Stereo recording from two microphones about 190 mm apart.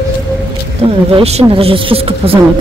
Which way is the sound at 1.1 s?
35° right (ahead or behind).